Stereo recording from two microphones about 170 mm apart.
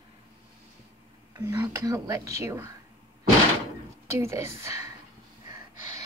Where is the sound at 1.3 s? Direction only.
20° right (ahead or behind).